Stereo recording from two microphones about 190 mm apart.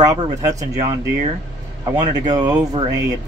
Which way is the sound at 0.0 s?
20° right (ahead or behind).